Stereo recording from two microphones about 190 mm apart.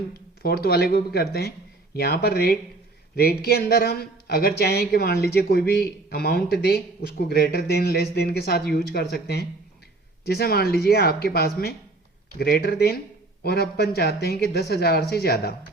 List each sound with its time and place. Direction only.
0.4 s speech: 55° left (ahead or behind)